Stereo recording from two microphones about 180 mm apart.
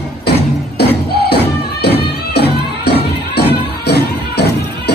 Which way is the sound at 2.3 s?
65° left (ahead or behind).